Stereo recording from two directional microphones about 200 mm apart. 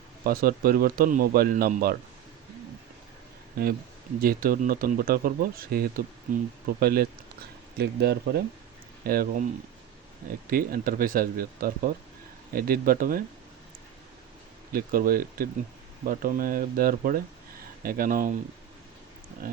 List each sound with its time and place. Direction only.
0.3 s speech: 50° right (ahead or behind)
3.6 s speech: 50° right (ahead or behind)
10.5 s speech: 45° right (ahead or behind)
14.7 s speech: 45° right (ahead or behind)